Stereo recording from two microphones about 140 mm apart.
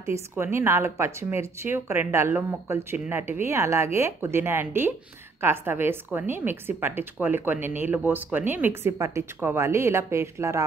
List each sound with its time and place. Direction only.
0.0 s a woman's voice: 20° right (ahead or behind)